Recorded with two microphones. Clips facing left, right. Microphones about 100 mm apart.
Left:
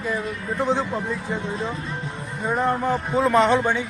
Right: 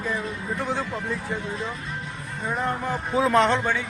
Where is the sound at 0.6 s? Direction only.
20° left (ahead or behind).